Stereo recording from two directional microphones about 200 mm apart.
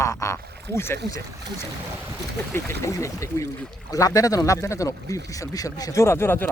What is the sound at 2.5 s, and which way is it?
Speech, 15° left (ahead or behind).